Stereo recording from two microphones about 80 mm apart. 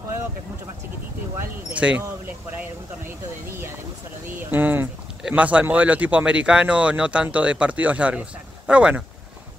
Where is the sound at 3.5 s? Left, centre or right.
Right.